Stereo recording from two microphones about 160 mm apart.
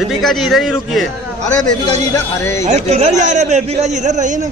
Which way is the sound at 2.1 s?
15° left (ahead or behind).